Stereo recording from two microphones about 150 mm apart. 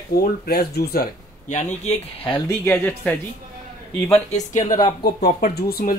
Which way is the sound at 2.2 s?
35° left (ahead or behind).